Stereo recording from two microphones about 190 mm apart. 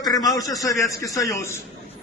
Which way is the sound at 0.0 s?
20° left (ahead or behind).